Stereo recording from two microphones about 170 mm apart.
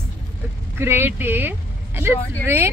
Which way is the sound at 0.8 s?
15° right (ahead or behind).